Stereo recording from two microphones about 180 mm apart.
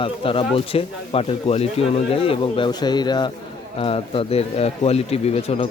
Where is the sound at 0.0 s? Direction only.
30° left (ahead or behind).